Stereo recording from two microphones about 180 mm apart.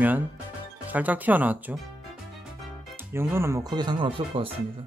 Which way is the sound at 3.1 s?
15° right (ahead or behind).